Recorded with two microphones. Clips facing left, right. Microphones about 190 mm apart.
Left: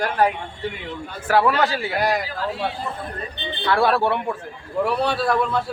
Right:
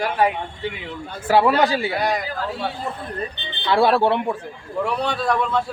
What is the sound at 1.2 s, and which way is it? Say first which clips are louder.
Speech: right 2 dB; 20° right (ahead or behind).